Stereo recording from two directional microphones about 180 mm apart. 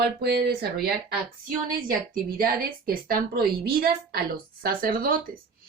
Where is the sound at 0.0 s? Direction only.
65° right (ahead or behind).